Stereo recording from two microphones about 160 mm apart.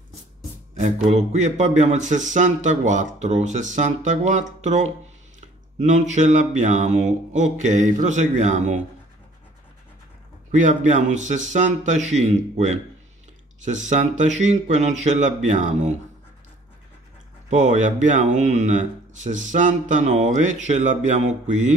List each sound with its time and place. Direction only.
1.1 s speech: 45° right (ahead or behind)
10.5 s speech: 50° right (ahead or behind)
17.5 s speech: 50° right (ahead or behind)